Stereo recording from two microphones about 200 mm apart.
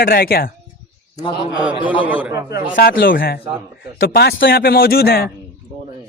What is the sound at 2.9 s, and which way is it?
Speech, 55° left (ahead or behind).